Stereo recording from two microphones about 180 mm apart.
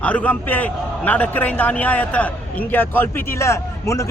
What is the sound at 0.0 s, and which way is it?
A man's voice, 10° left (ahead or behind).